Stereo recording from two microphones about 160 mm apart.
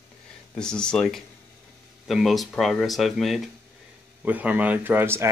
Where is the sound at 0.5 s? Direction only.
5° left (ahead or behind).